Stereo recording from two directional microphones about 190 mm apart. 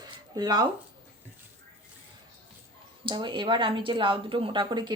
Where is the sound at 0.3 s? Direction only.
20° right (ahead or behind).